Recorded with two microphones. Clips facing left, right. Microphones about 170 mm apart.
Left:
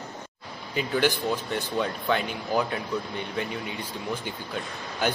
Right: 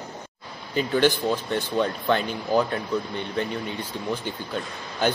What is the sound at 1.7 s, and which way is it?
Speech, centre (ahead or behind).